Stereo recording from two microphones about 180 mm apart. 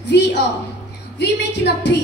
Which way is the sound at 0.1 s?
75° left (ahead or behind).